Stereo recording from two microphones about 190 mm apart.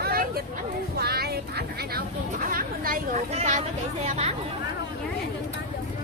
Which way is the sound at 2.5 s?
50° right (ahead or behind).